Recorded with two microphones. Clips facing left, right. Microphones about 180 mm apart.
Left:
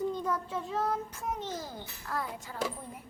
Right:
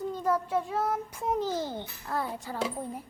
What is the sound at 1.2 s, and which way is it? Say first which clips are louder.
A child's voice: right 7 dB; 30° right (ahead or behind).